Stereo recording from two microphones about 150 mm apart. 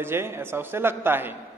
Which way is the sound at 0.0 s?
15° right (ahead or behind).